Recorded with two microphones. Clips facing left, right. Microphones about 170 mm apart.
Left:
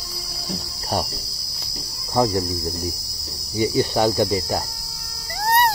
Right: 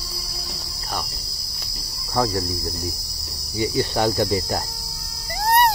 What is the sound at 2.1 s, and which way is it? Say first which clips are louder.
Speech: left 3 dB; 20° left (ahead or behind).